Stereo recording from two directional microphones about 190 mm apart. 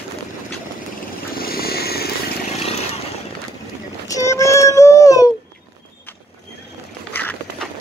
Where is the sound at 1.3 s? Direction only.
50° left (ahead or behind).